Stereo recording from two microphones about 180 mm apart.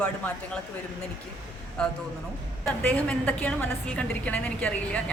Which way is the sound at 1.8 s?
5° left (ahead or behind).